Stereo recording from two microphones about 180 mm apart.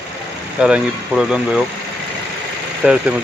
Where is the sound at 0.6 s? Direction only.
5° right (ahead or behind).